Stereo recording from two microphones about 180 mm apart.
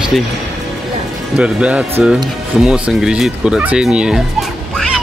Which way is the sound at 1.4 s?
5° right (ahead or behind).